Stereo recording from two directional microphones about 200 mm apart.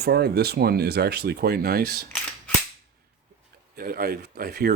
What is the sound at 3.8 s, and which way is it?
Speech, 50° right (ahead or behind).